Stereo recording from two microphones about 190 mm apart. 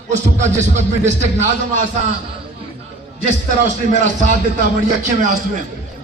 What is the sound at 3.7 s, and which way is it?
A man's voice, 40° right (ahead or behind).